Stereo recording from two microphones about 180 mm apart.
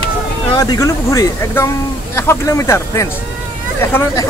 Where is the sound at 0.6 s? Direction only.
20° left (ahead or behind).